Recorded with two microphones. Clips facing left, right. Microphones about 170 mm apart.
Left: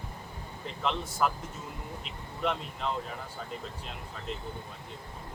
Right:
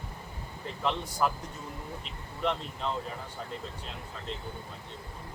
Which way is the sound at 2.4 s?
5° left (ahead or behind).